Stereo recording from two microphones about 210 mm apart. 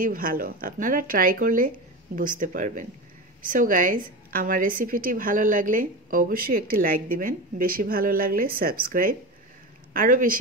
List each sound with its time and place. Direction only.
0.0 s a woman's voice: 40° right (ahead or behind)